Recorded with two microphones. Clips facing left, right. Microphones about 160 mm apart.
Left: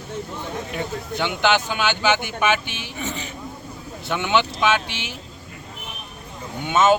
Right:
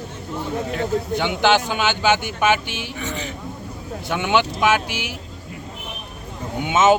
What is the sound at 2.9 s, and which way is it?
Speech, 20° left (ahead or behind).